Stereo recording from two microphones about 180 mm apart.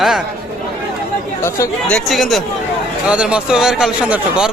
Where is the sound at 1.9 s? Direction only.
Centre (ahead or behind).